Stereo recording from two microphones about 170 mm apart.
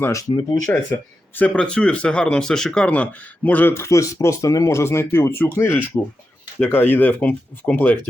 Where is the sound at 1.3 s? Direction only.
10° left (ahead or behind).